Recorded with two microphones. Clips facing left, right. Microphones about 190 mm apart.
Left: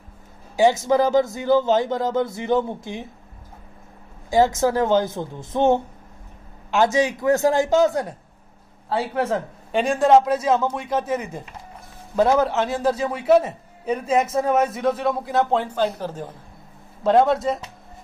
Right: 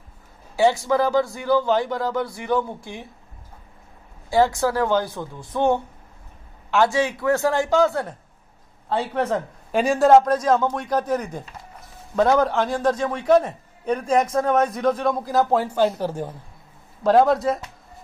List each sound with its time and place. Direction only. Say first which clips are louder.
0.6 s a man's voice: left 2 dB; 20° left (ahead or behind)
4.3 s a man's voice: left 1 dB; 20° left (ahead or behind); by 16.3 s 10° right (ahead or behind)
17.0 s a man's voice: right 1 dB; centre (ahead or behind)